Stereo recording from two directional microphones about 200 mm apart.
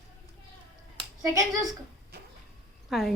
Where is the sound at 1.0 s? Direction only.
15° right (ahead or behind).